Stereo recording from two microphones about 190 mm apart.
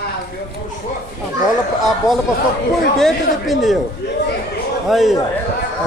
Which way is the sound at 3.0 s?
Centre (ahead or behind).